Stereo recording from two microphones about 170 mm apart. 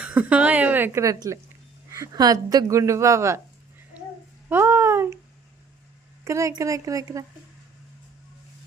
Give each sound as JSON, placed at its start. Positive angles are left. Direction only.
{"t": 0.0, "sound": "a woman's voice", "side_deg": -10}
{"t": 4.4, "sound": "a sound", "side_deg": -15}
{"t": 6.2, "sound": "a woman's voice", "side_deg": -15}